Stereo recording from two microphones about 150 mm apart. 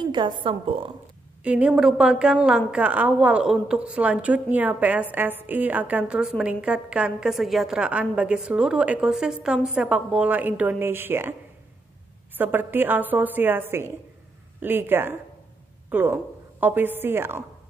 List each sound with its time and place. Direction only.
0.0 s a woman's voice: 30° right (ahead or behind)
1.4 s a woman's voice: 10° right (ahead or behind)
12.4 s a woman's voice: 15° right (ahead or behind)